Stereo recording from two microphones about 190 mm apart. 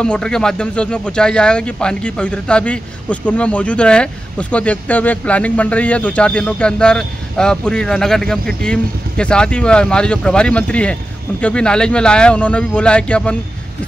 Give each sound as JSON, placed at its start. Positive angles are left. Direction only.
{"t": 0.0, "sound": "speech", "side_deg": 5}